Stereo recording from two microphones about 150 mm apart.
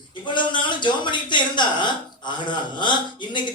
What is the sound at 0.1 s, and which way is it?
A man's voice, 30° left (ahead or behind).